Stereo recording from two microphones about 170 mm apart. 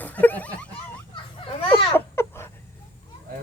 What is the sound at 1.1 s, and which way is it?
Children playing, 35° left (ahead or behind).